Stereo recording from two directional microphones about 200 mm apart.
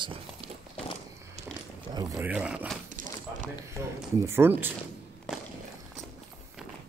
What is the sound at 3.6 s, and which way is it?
Speech, 15° right (ahead or behind).